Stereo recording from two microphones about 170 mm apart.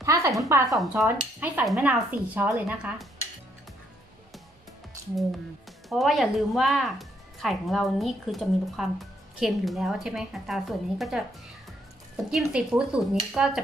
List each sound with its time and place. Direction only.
0.0 s a sound: 15° right (ahead or behind)
0.4 s speech: 15° right (ahead or behind)
5.9 s speech: centre (ahead or behind)
12.3 s speech: 5° right (ahead or behind)